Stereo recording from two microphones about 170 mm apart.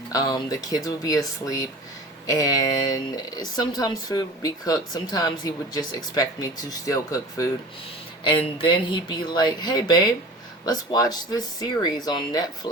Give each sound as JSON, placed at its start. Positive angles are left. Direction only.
{"t": 0.1, "sound": "speech", "side_deg": 25}
{"t": 8.2, "sound": "speech", "side_deg": 30}